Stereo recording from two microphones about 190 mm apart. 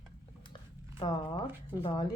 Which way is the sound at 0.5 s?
25° left (ahead or behind).